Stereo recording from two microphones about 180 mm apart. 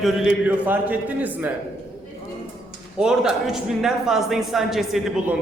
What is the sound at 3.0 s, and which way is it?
A man's voice, 5° right (ahead or behind).